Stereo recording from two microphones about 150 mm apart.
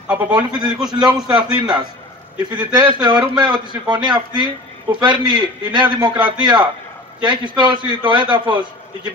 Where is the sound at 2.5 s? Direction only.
30° right (ahead or behind).